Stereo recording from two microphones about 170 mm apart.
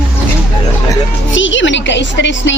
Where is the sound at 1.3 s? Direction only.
90° left.